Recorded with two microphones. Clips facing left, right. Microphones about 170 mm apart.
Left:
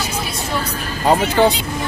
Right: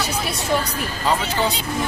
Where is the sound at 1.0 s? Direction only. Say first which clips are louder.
Left 8 dB; 60° left (ahead or behind).